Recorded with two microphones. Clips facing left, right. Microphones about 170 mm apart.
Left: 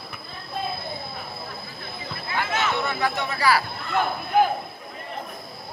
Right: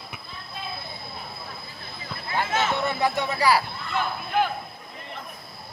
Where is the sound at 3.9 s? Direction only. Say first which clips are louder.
Left 4 dB; 45° left (ahead or behind).